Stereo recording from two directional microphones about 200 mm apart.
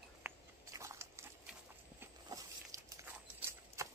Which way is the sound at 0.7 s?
15° right (ahead or behind).